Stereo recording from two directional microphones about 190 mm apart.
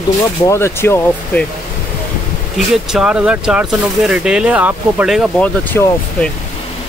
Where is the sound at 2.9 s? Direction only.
5° right (ahead or behind).